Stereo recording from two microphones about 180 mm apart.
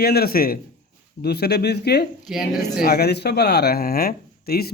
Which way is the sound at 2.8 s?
60° left (ahead or behind).